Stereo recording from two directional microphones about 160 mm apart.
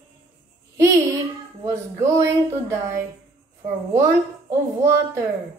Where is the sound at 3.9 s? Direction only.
20° right (ahead or behind).